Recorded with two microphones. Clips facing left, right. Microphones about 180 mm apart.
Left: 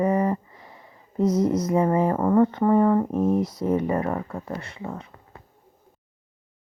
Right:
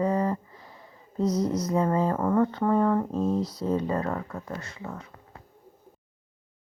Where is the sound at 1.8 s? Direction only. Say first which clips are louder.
Left 2 dB; 15° left (ahead or behind).